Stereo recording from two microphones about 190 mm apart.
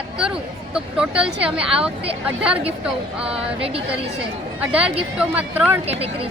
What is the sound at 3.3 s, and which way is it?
Speech, 30° right (ahead or behind).